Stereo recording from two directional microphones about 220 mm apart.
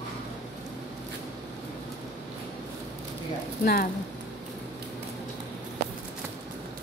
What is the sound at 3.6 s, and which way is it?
Speech, 45° left (ahead or behind).